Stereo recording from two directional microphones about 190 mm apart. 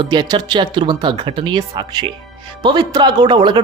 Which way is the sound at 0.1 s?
20° right (ahead or behind).